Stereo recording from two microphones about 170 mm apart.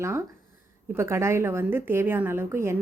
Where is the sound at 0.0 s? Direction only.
15° right (ahead or behind).